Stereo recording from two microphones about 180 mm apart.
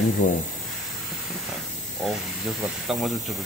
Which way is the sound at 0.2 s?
45° left (ahead or behind).